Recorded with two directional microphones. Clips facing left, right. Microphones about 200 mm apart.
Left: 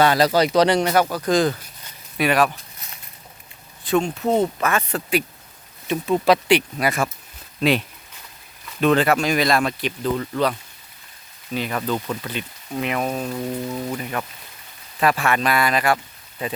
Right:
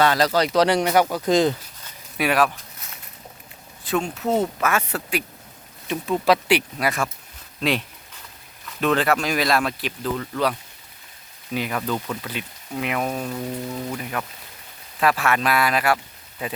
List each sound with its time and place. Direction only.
0.0 s speech: 15° left (ahead or behind); by 0.8 s centre (ahead or behind)
0.8 s speech: 10° right (ahead or behind)
2.1 s speech: 5° right (ahead or behind)
3.8 s speech: centre (ahead or behind)
11.5 s speech: 10° right (ahead or behind)
11.8 s speech: 5° left (ahead or behind)
12.3 s speech: 5° right (ahead or behind)